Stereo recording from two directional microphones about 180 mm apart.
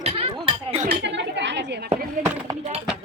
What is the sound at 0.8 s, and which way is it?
Speech, 75° right (ahead or behind).